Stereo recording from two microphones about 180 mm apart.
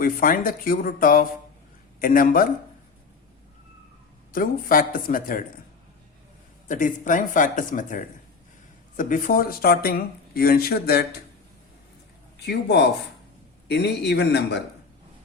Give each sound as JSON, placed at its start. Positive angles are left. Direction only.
{"t": 0.0, "sound": "speech", "side_deg": 50}
{"t": 4.3, "sound": "speech", "side_deg": 50}
{"t": 6.7, "sound": "speech", "side_deg": 45}
{"t": 12.4, "sound": "a man's voice", "side_deg": 70}